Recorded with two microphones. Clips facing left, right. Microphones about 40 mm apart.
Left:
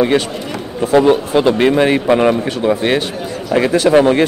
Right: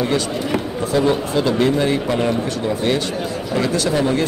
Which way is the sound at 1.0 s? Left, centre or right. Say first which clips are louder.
Left 6 dB; left.